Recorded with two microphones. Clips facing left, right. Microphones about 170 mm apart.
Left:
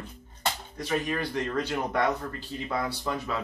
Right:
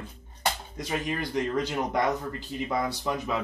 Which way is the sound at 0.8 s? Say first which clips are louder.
Left 5 dB; 15° right (ahead or behind).